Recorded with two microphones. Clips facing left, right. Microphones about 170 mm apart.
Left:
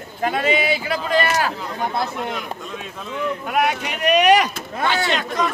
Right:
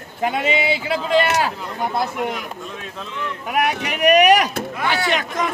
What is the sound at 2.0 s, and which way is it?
Speech, 10° right (ahead or behind).